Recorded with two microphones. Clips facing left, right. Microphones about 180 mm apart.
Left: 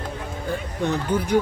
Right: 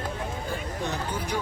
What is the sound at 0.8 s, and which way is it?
Speech, 55° left (ahead or behind).